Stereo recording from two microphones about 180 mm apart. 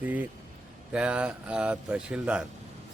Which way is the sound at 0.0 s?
10° right (ahead or behind).